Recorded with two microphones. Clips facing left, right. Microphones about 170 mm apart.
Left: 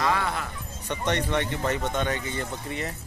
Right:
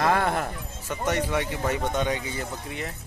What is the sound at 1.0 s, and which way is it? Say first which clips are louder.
Speech: right 1 dB; 10° right (ahead or behind).